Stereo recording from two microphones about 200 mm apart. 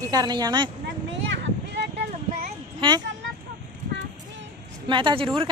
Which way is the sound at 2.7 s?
25° right (ahead or behind).